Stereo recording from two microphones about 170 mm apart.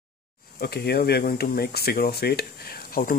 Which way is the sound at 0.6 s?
65° left (ahead or behind).